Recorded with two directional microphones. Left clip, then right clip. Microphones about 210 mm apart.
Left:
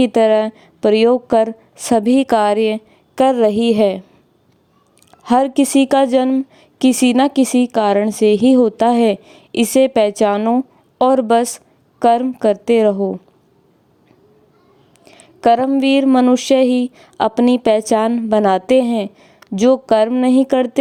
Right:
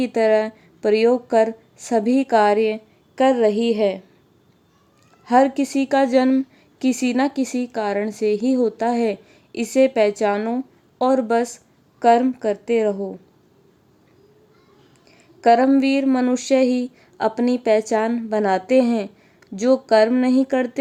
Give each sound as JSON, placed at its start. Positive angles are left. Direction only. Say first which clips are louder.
{"t": 0.0, "sound": "a woman's voice", "louder": "left 5 dB", "side_deg": 40}
{"t": 5.2, "sound": "a woman's voice", "louder": "left 2 dB", "side_deg": 40}
{"t": 15.1, "sound": "a woman's voice", "louder": "left 2 dB", "side_deg": 40}